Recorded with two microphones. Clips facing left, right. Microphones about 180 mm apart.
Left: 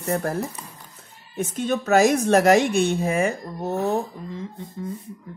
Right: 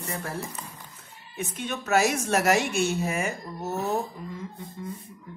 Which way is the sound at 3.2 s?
30° left (ahead or behind).